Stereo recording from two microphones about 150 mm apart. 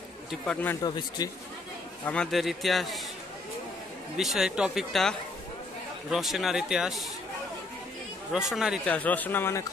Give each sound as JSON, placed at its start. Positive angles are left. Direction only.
{"t": 0.8, "sound": "speech", "side_deg": 25}
{"t": 2.0, "sound": "speech", "side_deg": 5}
{"t": 4.2, "sound": "speech", "side_deg": 0}
{"t": 8.3, "sound": "speech", "side_deg": -5}
{"t": 8.8, "sound": "speech", "side_deg": 10}